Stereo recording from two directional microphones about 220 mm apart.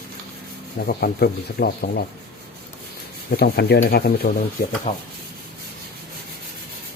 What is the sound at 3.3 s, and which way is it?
Speech, 45° left (ahead or behind).